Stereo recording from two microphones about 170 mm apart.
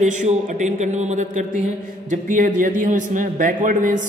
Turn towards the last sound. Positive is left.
turn(degrees=-50)  # may be behind; listen again after turning